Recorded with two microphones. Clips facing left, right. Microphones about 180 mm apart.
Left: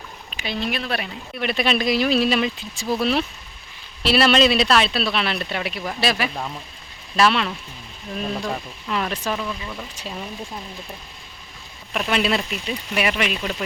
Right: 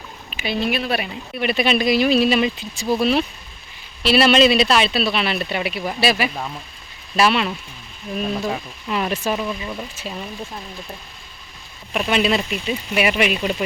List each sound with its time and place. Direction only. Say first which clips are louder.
0.3 s speech: right 4 dB; 10° right (ahead or behind)
9.9 s speech: right 2 dB; 5° right (ahead or behind)
11.9 s speech: right 3 dB; 5° right (ahead or behind)